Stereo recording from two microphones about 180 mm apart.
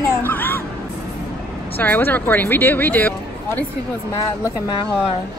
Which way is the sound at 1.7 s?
10° left (ahead or behind).